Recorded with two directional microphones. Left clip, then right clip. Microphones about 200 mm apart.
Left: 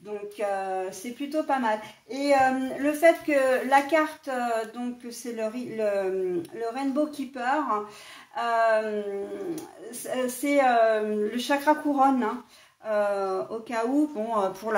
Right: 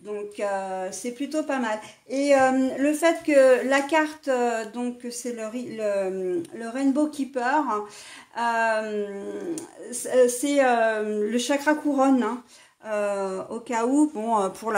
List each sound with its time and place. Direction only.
0.4 s speech: 55° right (ahead or behind)